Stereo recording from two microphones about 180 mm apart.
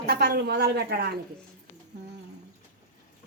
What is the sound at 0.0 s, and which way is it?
A woman's voice, 60° right (ahead or behind).